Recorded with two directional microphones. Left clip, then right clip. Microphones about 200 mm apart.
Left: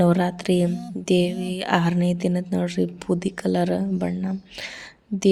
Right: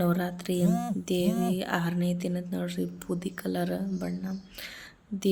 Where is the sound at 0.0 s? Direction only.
35° left (ahead or behind).